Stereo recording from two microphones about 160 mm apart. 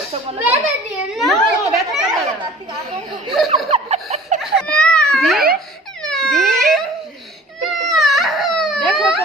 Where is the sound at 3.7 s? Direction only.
45° right (ahead or behind).